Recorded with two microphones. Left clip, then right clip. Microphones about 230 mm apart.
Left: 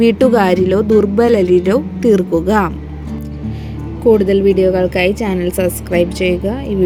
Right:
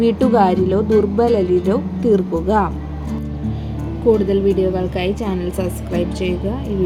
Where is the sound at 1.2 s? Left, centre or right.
Left.